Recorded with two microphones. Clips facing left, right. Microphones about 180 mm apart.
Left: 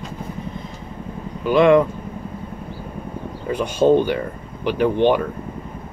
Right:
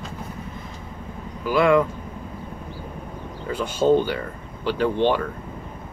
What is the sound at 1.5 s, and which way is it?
Speech, 25° left (ahead or behind).